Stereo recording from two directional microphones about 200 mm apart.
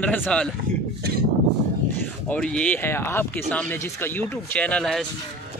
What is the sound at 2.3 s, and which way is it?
A man's voice, 5° left (ahead or behind).